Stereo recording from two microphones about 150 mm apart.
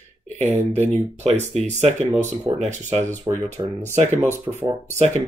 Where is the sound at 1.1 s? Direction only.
45° right (ahead or behind).